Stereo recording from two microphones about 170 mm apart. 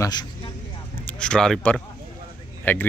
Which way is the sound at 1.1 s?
5° left (ahead or behind).